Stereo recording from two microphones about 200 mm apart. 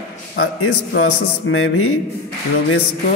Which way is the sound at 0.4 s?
90° left.